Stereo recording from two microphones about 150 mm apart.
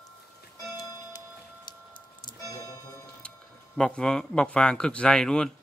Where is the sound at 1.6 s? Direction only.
30° left (ahead or behind).